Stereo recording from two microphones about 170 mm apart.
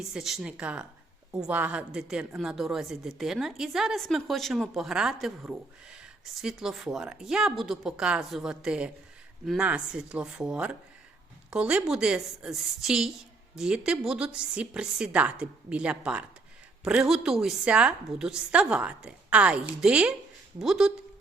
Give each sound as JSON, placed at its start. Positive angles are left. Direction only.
{"t": 0.0, "sound": "a woman's voice", "side_deg": 0}